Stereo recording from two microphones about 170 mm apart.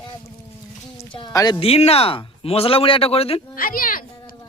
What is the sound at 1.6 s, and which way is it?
Speech, 35° left (ahead or behind).